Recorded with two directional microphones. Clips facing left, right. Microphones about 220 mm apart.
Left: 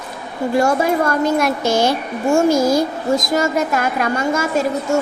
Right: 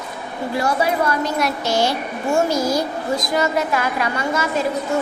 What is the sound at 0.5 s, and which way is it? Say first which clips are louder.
A woman's voice: left 4 dB; 45° left (ahead or behind).